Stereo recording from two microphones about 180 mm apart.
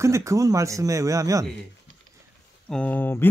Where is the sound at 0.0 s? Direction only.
15° right (ahead or behind).